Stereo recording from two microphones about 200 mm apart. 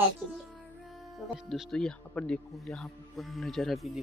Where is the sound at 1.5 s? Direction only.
Centre (ahead or behind).